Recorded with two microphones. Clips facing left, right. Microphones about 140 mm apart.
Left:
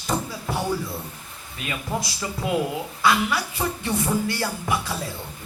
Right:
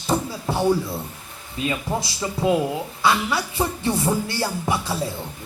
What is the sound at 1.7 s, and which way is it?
Speech, 25° right (ahead or behind).